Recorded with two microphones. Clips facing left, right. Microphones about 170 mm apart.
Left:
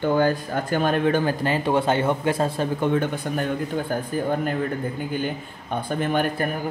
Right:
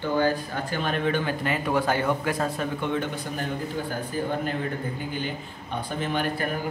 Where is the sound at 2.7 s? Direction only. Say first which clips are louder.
Left 5 dB; 50° left (ahead or behind).